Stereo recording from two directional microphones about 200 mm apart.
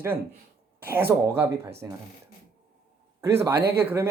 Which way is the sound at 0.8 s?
10° right (ahead or behind).